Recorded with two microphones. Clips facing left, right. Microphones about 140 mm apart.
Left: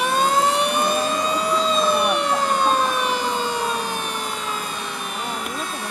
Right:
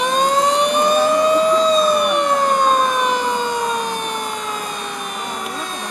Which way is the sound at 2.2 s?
15° right (ahead or behind).